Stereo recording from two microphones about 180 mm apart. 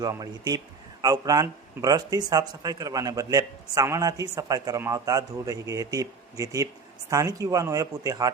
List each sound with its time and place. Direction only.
0.0 s speech: 20° right (ahead or behind)